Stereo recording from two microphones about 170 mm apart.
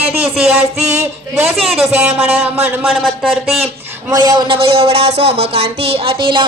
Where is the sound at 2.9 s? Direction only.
5° right (ahead or behind).